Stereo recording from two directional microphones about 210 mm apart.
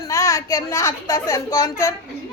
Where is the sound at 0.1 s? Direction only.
15° left (ahead or behind).